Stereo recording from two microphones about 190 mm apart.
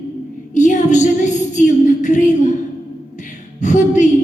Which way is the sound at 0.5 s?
40° left (ahead or behind).